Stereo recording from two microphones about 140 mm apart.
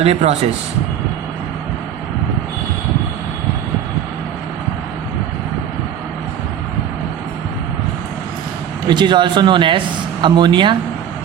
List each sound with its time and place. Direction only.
0.0 s speech: 45° right (ahead or behind)
8.9 s speech: 35° right (ahead or behind)